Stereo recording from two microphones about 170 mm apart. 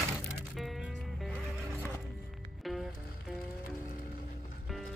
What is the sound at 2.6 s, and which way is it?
Music, centre (ahead or behind).